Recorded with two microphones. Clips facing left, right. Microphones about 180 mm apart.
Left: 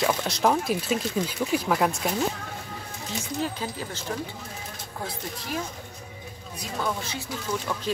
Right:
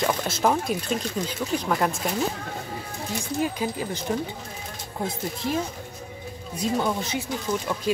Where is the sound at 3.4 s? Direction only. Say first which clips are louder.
Right 5 dB; 15° right (ahead or behind).